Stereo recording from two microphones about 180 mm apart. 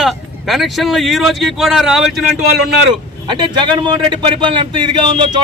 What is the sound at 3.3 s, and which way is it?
Speech, 25° right (ahead or behind).